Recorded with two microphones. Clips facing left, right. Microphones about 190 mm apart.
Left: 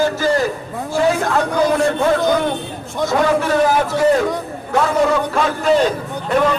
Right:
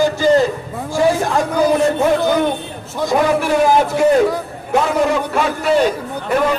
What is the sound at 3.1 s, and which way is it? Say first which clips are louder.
A man's voice: right 1 dB; 15° right (ahead or behind).